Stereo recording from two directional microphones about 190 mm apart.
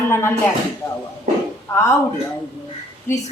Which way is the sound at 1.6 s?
15° left (ahead or behind).